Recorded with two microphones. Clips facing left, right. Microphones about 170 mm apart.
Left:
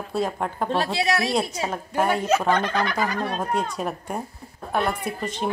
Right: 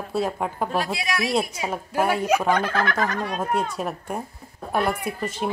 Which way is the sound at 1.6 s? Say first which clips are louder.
Even; 5° right (ahead or behind).